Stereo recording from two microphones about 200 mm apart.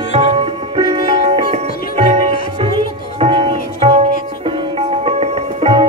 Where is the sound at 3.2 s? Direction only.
25° right (ahead or behind).